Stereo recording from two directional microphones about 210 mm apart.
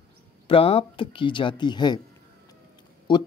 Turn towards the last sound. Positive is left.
turn(degrees=20)  # may be behind; listen again after turning